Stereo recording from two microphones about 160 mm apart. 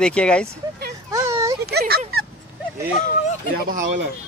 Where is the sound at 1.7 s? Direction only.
80° right.